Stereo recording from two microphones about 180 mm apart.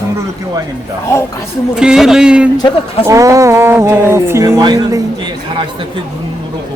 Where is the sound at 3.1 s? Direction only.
15° right (ahead or behind).